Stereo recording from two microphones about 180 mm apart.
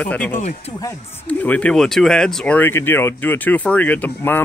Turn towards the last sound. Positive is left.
turn(degrees=10)  # may be behind; listen again after turning